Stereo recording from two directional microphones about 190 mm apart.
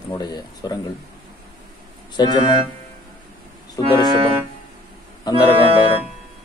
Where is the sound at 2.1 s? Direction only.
25° left (ahead or behind).